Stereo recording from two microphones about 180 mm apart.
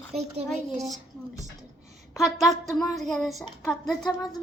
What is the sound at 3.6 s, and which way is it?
Speech, 20° left (ahead or behind).